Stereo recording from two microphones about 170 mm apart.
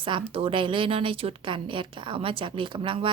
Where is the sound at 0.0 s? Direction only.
30° right (ahead or behind).